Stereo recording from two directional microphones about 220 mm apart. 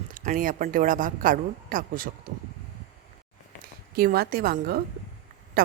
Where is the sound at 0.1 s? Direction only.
40° right (ahead or behind).